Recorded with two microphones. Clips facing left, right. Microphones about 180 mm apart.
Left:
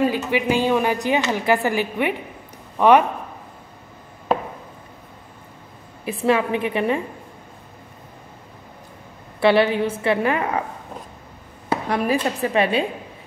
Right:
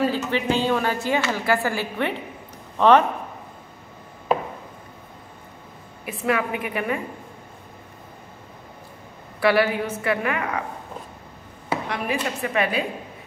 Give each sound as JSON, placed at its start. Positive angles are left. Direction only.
{"t": 0.0, "sound": "a woman's voice", "side_deg": 15}
{"t": 6.0, "sound": "a woman's voice", "side_deg": 30}
{"t": 9.4, "sound": "a woman's voice", "side_deg": 25}
{"t": 11.9, "sound": "a woman's voice", "side_deg": 35}